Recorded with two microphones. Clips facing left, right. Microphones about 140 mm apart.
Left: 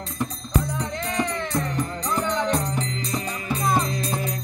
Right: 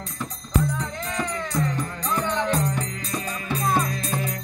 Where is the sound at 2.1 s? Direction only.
15° left (ahead or behind).